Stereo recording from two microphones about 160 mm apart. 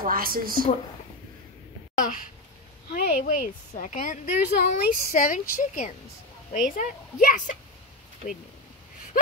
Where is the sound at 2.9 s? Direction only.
60° left (ahead or behind).